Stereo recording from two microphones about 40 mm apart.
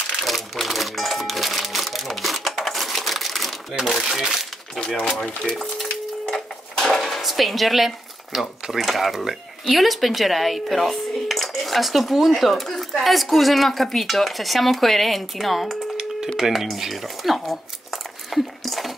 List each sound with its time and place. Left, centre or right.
0.2 s crumpling: centre
3.8 s speech: centre
4.7 s speech: left
5.6 s cash register: centre
6.9 s dishes: centre
7.2 s speech: centre
16.7 s a sound: centre